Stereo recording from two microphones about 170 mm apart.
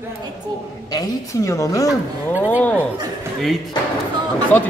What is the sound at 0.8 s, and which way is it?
A woman's voice, 20° left (ahead or behind).